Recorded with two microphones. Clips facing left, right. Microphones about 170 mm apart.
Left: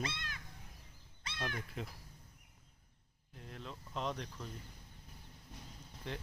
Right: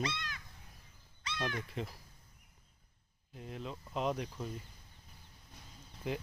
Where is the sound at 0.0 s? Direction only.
50° left (ahead or behind).